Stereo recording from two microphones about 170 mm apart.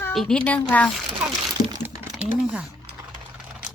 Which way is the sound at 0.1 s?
5° left (ahead or behind).